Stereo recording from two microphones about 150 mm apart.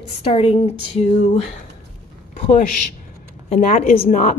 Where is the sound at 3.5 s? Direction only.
65° left (ahead or behind).